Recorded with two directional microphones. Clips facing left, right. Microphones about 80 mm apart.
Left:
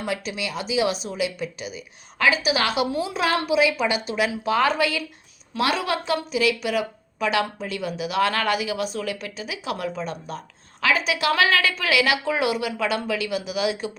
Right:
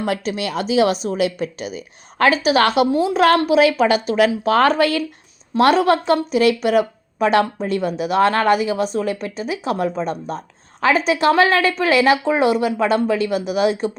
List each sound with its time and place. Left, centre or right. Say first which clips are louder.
0.0 s a woman's voice: right 6 dB; right
2.9 s a woman's voice: right 9 dB; right